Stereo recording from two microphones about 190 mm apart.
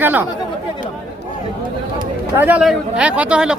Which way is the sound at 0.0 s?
10° right (ahead or behind).